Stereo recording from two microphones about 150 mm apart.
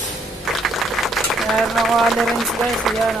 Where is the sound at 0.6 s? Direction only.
Centre (ahead or behind).